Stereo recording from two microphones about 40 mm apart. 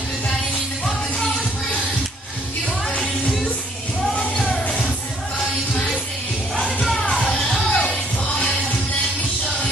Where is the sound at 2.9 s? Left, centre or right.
Left.